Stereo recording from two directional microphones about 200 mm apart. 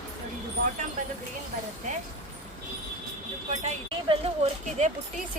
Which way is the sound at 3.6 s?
30° right (ahead or behind).